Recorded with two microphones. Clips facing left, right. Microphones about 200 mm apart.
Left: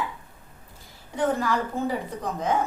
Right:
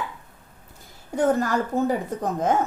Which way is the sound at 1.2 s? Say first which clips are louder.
Right 3 dB; 45° right (ahead or behind).